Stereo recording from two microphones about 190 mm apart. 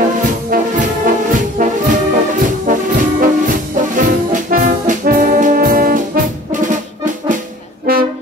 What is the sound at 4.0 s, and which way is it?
Music, 45° right (ahead or behind).